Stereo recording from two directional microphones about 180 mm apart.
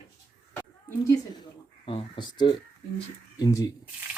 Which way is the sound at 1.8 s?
25° left (ahead or behind).